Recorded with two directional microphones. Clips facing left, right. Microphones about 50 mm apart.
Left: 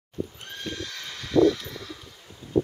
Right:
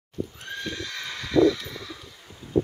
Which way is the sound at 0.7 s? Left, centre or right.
Right.